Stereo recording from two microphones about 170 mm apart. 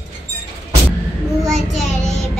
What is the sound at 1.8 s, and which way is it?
Child singing, 45° left (ahead or behind).